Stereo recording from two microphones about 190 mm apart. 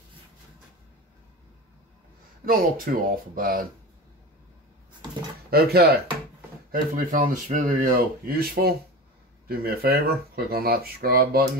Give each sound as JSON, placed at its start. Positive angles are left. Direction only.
{"t": 2.4, "sound": "speech", "side_deg": -50}
{"t": 5.5, "sound": "speech", "side_deg": -55}